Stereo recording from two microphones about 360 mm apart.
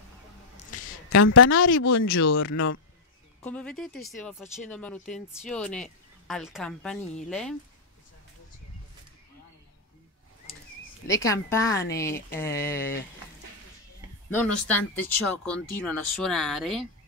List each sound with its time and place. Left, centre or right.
1.1 s speech: left
3.4 s speech: centre
11.2 s a woman's voice: centre
14.3 s speech: centre